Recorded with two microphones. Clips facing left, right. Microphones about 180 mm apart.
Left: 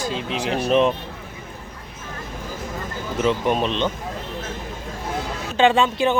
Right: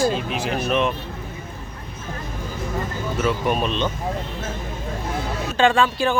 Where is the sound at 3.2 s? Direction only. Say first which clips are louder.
Left 2 dB; 20° left (ahead or behind).